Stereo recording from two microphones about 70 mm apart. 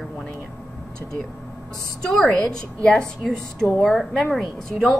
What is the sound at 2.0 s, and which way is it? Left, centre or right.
A woman's voice, centre.